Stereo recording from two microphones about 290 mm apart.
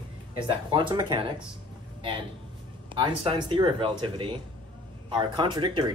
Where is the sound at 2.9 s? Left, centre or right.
Centre.